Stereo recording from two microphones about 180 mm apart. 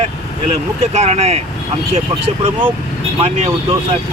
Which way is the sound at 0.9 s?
35° right (ahead or behind).